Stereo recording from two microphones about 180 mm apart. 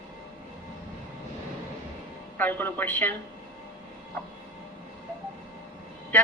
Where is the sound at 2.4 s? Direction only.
10° left (ahead or behind).